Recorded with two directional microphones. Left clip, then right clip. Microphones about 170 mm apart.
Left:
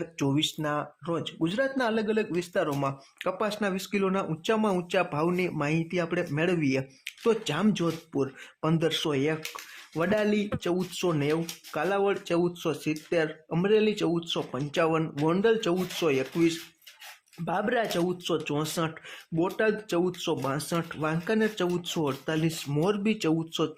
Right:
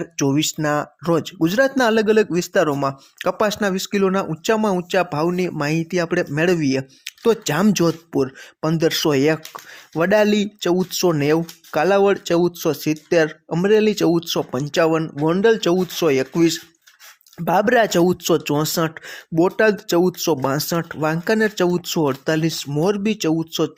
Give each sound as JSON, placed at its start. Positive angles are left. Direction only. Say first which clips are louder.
{"t": 0.0, "sound": "speech", "louder": "right 8 dB", "side_deg": -30}